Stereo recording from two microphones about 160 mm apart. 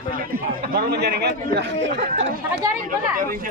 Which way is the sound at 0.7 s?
85° right.